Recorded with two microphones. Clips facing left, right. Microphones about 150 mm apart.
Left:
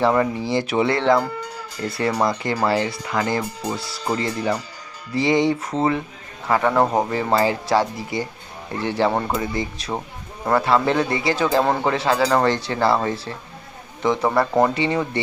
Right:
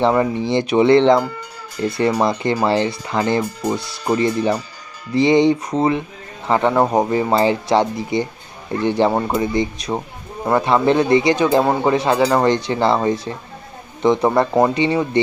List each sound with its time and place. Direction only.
0.0 s speech: 20° right (ahead or behind)